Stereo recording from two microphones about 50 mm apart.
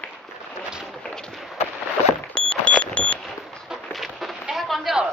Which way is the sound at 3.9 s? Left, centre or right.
Centre.